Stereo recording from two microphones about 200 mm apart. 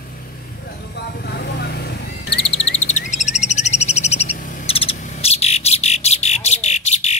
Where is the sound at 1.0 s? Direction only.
50° left (ahead or behind).